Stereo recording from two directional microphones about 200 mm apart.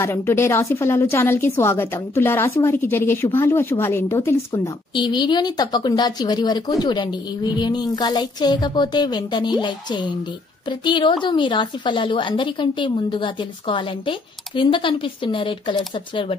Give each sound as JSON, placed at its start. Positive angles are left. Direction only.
{"t": 0.0, "sound": "a woman's voice", "side_deg": 10}
{"t": 4.9, "sound": "a woman's voice", "side_deg": 20}